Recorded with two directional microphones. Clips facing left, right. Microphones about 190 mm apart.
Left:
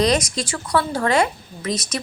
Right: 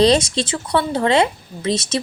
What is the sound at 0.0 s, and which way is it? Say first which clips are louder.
A woman's voice: right 5 dB; 30° right (ahead or behind).